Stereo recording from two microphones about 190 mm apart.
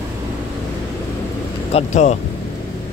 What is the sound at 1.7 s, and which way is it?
Speech, 35° left (ahead or behind).